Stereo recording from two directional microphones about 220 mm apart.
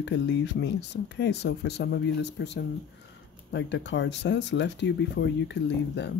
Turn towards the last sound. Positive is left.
turn(degrees=50)  # may be behind; listen again after turning